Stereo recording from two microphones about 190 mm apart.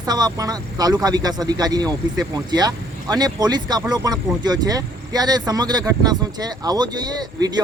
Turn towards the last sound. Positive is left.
turn(degrees=-20)  # may be behind; listen again after turning